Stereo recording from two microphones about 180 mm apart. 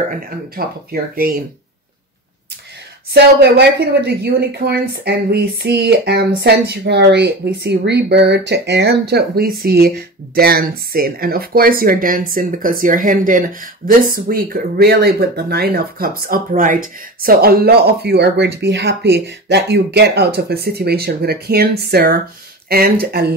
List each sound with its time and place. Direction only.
0.1 s speech: 55° right (ahead or behind)
3.1 s a woman's voice: 65° right (ahead or behind)